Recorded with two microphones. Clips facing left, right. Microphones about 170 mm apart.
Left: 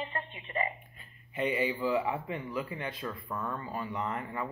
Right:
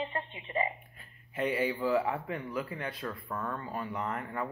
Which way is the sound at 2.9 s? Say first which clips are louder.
Even; centre (ahead or behind).